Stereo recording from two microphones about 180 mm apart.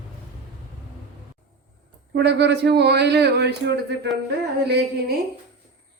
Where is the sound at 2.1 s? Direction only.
65° right (ahead or behind).